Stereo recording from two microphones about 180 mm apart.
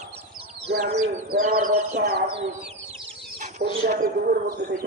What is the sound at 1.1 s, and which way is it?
Speech, 40° right (ahead or behind).